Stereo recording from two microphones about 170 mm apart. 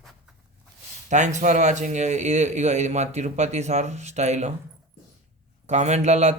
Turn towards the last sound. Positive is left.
turn(degrees=-40)  # may be behind; listen again after turning